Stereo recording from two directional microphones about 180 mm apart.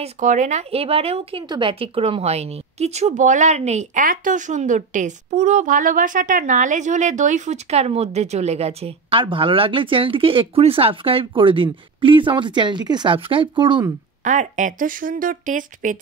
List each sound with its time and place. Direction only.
0.0 s speech: 45° right (ahead or behind); by 13.9 s 25° right (ahead or behind)
14.2 s speech: 45° right (ahead or behind)